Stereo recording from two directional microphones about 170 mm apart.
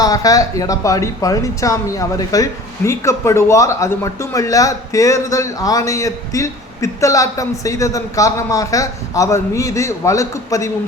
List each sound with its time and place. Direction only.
0.0 s speech: 20° left (ahead or behind)